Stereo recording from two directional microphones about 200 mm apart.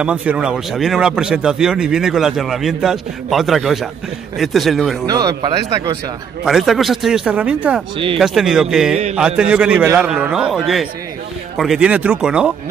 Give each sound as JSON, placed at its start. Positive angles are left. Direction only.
{"t": 0.0, "sound": "speech", "side_deg": -5}
{"t": 5.0, "sound": "speech", "side_deg": -20}
{"t": 6.4, "sound": "speech", "side_deg": 0}